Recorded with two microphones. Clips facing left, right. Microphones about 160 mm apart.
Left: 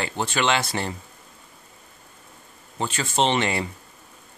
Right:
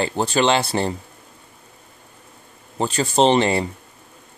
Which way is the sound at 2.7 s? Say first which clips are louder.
Right 6 dB; 35° right (ahead or behind).